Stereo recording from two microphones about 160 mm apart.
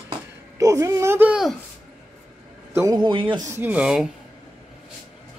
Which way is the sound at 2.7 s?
20° right (ahead or behind).